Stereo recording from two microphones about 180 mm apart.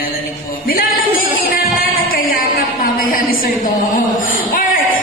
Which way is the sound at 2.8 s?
50° left (ahead or behind).